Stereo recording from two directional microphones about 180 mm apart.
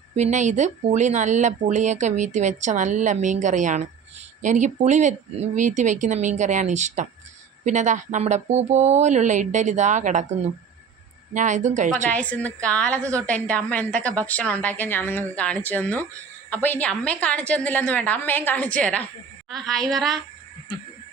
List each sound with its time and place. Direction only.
0.2 s speech: 40° right (ahead or behind)
11.3 s speech: 45° right (ahead or behind)
12.0 s a woman's voice: 5° left (ahead or behind)